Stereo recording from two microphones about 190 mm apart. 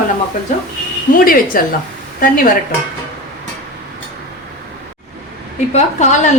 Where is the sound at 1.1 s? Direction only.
45° left (ahead or behind).